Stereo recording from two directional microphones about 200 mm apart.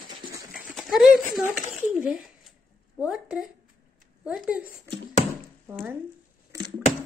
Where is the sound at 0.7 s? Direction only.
Centre (ahead or behind).